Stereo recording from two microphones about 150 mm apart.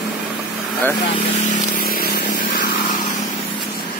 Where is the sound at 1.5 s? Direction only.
75° left (ahead or behind).